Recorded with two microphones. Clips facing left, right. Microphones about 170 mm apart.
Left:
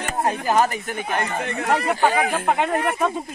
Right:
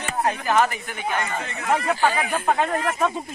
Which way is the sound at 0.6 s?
45° left (ahead or behind).